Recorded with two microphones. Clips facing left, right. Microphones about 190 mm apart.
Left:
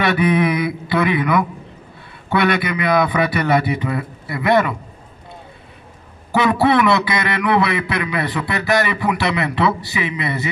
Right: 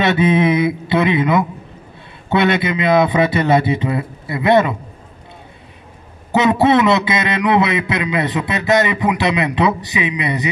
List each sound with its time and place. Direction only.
0.0 s a man's voice: 20° right (ahead or behind)
6.3 s a man's voice: 20° right (ahead or behind)